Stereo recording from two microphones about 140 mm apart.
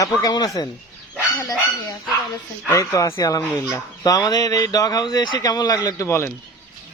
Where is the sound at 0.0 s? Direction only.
30° left (ahead or behind).